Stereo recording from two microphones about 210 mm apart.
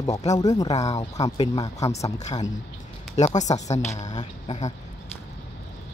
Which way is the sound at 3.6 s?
35° left (ahead or behind).